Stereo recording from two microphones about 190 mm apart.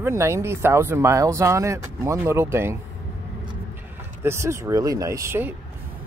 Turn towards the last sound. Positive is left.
turn(degrees=-15)  # may be behind; listen again after turning